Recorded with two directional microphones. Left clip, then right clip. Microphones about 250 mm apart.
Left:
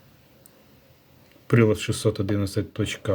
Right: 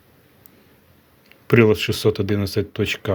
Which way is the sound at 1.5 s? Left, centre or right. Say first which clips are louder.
Right 6 dB; centre.